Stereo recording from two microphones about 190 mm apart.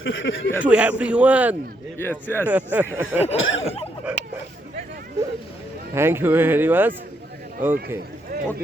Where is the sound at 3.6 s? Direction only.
30° left (ahead or behind).